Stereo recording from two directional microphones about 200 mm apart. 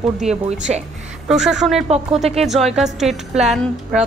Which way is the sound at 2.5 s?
Centre (ahead or behind).